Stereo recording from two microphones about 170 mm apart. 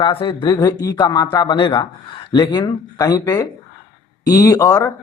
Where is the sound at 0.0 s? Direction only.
30° left (ahead or behind).